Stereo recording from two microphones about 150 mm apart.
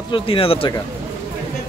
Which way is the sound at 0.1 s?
35° left (ahead or behind).